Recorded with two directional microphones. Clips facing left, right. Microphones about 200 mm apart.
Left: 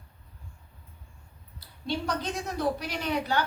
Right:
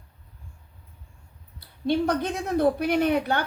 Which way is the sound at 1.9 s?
55° right (ahead or behind).